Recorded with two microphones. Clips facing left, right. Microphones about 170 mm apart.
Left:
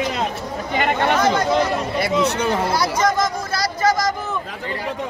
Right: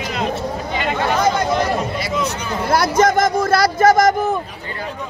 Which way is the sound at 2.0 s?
65° left (ahead or behind).